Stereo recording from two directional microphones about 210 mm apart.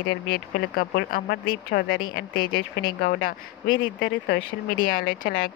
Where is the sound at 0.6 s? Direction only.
45° left (ahead or behind).